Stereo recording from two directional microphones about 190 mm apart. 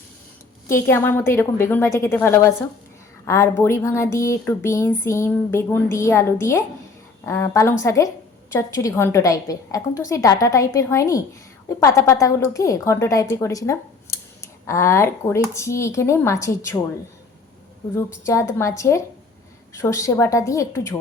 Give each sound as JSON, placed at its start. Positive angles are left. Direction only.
{"t": 0.7, "sound": "speech", "side_deg": 10}
{"t": 17.9, "sound": "speech", "side_deg": 15}